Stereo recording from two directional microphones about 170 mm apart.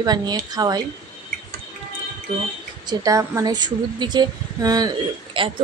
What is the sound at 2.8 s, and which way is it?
Speech, 20° right (ahead or behind).